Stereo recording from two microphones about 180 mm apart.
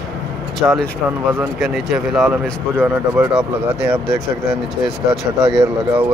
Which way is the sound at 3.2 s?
15° right (ahead or behind).